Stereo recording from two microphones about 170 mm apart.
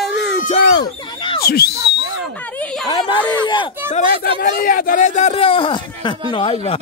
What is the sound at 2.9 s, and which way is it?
Speech, 25° left (ahead or behind).